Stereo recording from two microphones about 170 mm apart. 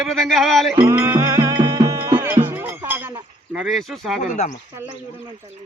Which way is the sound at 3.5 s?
Centre (ahead or behind).